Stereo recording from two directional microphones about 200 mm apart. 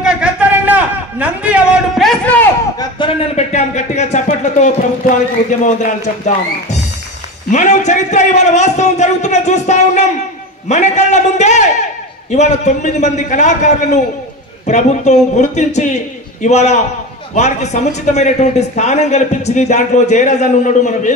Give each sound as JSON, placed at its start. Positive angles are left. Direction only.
{"t": 0.0, "sound": "a sound", "side_deg": -5}
{"t": 2.8, "sound": "speech", "side_deg": 25}
{"t": 5.7, "sound": "speech", "side_deg": 35}